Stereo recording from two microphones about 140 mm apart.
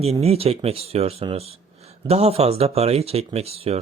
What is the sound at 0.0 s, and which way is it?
Speech, 45° right (ahead or behind).